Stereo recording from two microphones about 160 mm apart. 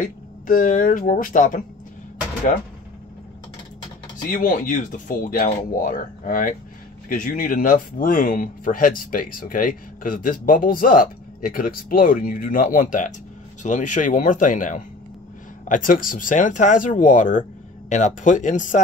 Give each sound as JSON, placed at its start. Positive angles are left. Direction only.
{"t": 0.0, "sound": "speech", "side_deg": 55}
{"t": 4.3, "sound": "speech", "side_deg": 55}